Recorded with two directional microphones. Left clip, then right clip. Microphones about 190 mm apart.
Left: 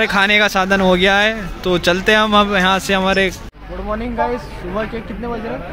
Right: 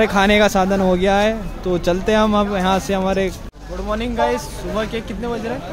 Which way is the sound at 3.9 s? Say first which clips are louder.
Right 1 dB; 10° right (ahead or behind).